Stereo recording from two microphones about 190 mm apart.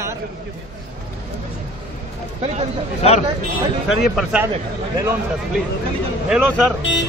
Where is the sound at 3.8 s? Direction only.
5° right (ahead or behind).